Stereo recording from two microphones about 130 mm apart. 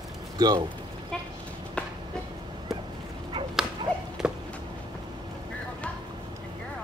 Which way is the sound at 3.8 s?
40° right (ahead or behind).